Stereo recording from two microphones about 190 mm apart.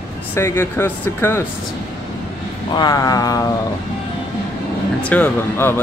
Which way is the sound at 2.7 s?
20° left (ahead or behind).